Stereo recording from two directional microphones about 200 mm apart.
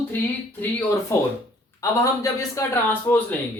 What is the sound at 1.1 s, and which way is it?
Speech, 15° left (ahead or behind).